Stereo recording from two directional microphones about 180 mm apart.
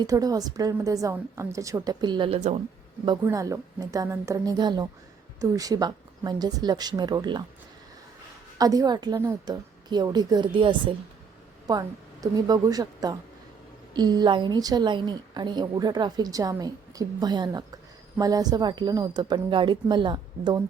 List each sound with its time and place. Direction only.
0.0 s a woman's voice: 20° right (ahead or behind)
3.2 s a woman's voice: 20° right (ahead or behind)
8.5 s a woman's voice: 20° right (ahead or behind)